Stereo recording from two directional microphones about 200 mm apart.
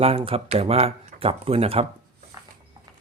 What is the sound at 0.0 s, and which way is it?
Speech, 30° right (ahead or behind).